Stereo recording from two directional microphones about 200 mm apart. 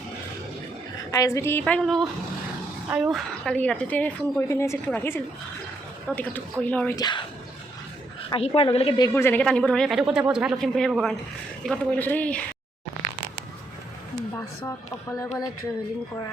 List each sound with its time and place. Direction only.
1.1 s a woman's voice: 15° left (ahead or behind)
6.9 s a woman's voice: 20° left (ahead or behind)
8.3 s a woman's voice: 25° left (ahead or behind)
9.1 s a woman's voice: 10° left (ahead or behind)
14.3 s a woman's voice: 10° left (ahead or behind)